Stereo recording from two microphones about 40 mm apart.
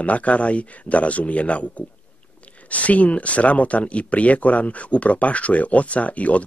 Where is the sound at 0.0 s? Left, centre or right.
Left.